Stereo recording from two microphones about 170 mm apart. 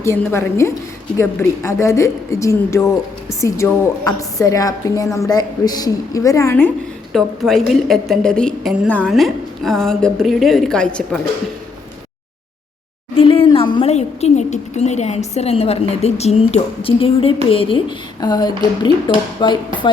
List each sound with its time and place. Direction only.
0.0 s a woman's voice: 15° left (ahead or behind)
7.1 s a woman's voice: centre (ahead or behind)
13.1 s a sound: 30° left (ahead or behind)
13.9 s a woman's voice: 40° left (ahead or behind)